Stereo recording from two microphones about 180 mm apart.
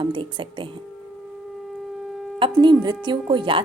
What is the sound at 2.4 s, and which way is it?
A woman's voice, 25° right (ahead or behind).